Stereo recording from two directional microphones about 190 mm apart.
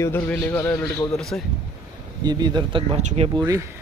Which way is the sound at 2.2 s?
20° right (ahead or behind).